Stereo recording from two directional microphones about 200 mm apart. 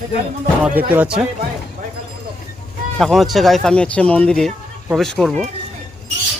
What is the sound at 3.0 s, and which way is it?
Speech, centre (ahead or behind).